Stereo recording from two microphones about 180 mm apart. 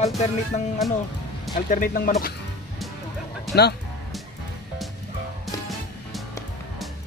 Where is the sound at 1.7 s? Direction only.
50° left (ahead or behind).